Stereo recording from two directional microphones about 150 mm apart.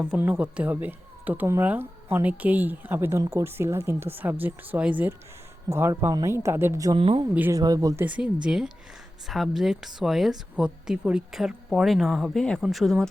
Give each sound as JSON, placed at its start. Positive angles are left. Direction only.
{"t": 0.0, "sound": "speech", "side_deg": -10}
{"t": 7.0, "sound": "speech", "side_deg": -40}
{"t": 7.5, "sound": "speech", "side_deg": -25}
{"t": 8.0, "sound": "speech", "side_deg": -10}